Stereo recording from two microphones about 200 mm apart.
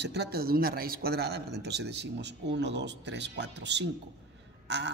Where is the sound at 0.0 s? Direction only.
55° right (ahead or behind).